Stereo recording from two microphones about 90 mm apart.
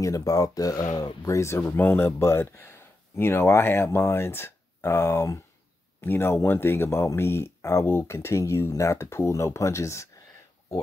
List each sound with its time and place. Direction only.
0.0 s speech: 40° left (ahead or behind)
1.2 s speech: 30° left (ahead or behind)